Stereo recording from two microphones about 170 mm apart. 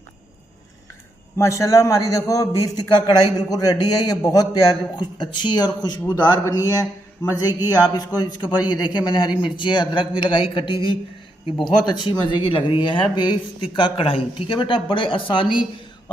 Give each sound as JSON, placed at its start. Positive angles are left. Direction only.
{"t": 1.4, "sound": "a man's voice", "side_deg": 20}